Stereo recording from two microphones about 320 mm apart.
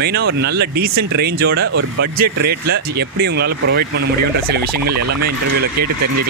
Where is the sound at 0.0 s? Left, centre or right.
Right.